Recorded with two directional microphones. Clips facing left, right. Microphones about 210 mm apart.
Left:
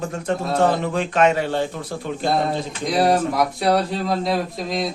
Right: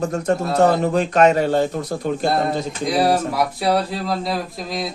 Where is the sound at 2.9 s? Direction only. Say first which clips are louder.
Even; centre (ahead or behind).